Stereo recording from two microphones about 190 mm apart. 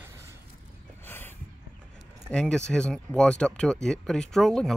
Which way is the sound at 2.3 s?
5° left (ahead or behind).